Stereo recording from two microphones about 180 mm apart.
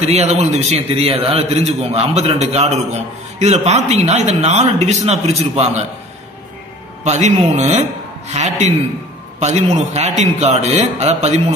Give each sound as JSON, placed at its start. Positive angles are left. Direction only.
{"t": 0.1, "sound": "a man's voice", "side_deg": -35}
{"t": 7.1, "sound": "a man's voice", "side_deg": -40}